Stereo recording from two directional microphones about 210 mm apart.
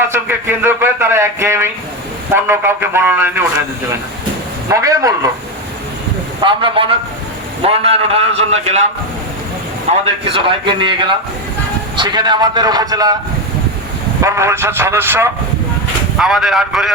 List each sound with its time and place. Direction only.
0.1 s a man's voice: 10° right (ahead or behind)
4.7 s a man's voice: 15° right (ahead or behind)
6.4 s a man's voice: 25° right (ahead or behind)
10.2 s a man's voice: 25° right (ahead or behind)
14.2 s a man's voice: 15° right (ahead or behind)